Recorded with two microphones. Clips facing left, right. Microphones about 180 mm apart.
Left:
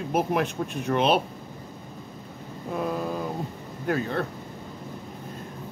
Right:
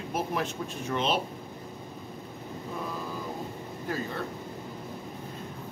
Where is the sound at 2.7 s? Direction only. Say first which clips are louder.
Left 9 dB; 60° left (ahead or behind).